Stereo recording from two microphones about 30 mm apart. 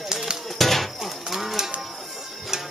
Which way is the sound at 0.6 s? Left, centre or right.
Centre.